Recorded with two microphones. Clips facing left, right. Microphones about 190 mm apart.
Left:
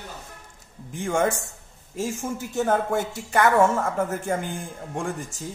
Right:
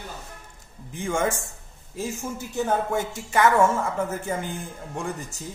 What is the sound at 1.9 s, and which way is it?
Speech, 90° left.